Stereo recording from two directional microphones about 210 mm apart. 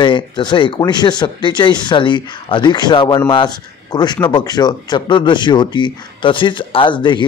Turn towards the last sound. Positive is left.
turn(degrees=20)  # may be behind; listen again after turning